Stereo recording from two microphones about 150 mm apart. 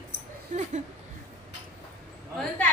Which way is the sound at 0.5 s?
55° right (ahead or behind).